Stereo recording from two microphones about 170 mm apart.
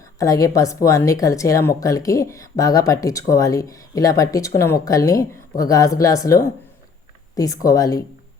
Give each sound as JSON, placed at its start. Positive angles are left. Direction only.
{"t": 0.2, "sound": "speech", "side_deg": 20}